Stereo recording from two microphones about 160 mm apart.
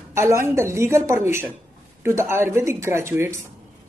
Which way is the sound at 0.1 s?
15° right (ahead or behind).